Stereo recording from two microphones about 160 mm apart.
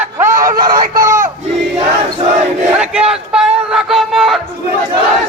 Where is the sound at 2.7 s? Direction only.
5° right (ahead or behind).